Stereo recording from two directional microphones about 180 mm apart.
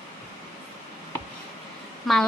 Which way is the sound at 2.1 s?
Centre (ahead or behind).